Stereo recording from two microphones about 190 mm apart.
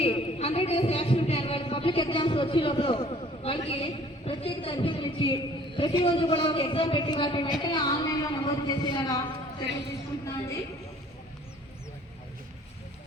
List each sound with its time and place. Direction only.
0.0 s a man's voice: 30° left (ahead or behind)